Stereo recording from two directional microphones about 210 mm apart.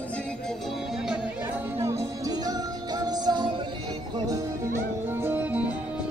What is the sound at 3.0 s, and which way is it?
Music, 20° right (ahead or behind).